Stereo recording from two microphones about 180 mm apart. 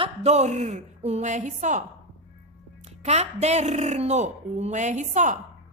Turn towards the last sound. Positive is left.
turn(degrees=-40)  # may be behind; listen again after turning